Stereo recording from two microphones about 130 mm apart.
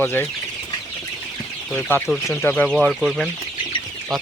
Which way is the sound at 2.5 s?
10° left (ahead or behind).